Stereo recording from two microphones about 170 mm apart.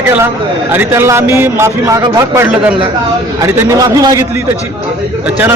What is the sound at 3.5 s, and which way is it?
Speech, 20° right (ahead or behind).